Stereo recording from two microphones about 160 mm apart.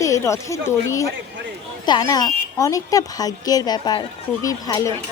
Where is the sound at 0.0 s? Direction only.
20° left (ahead or behind).